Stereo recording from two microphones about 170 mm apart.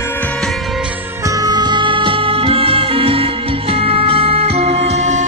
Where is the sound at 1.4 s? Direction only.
25° right (ahead or behind).